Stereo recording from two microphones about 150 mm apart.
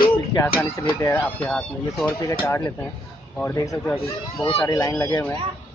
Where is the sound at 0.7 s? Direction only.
20° left (ahead or behind).